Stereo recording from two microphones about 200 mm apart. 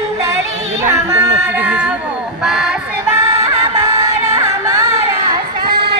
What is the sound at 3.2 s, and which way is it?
Music, 15° right (ahead or behind).